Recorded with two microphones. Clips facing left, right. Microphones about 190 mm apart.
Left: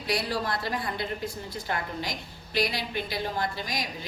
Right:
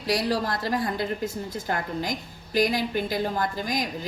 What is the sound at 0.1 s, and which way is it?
A woman's voice, 40° right (ahead or behind).